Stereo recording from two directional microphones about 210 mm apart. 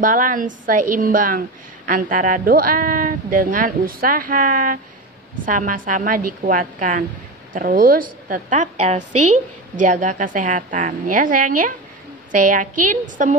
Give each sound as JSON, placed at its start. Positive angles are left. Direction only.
{"t": 0.0, "sound": "a woman's voice", "side_deg": -40}